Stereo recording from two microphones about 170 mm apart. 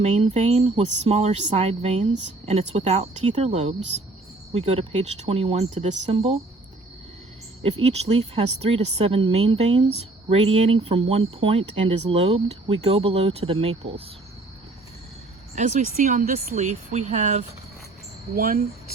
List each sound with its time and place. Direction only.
0.0 s a woman's voice: 40° right (ahead or behind)
7.6 s a woman's voice: 35° right (ahead or behind)
15.5 s a woman's voice: 45° right (ahead or behind)
18.3 s speech: 55° right (ahead or behind)